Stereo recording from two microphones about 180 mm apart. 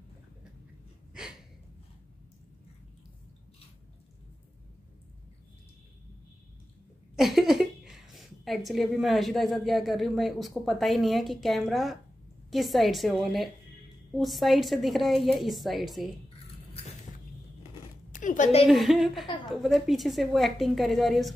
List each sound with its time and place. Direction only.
7.2 s a woman's voice: centre (ahead or behind)
18.1 s a woman's voice: 45° left (ahead or behind)
18.7 s a woman's voice: centre (ahead or behind)